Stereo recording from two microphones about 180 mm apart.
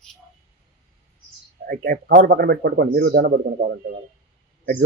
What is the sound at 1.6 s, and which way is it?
A man's voice, 55° right (ahead or behind).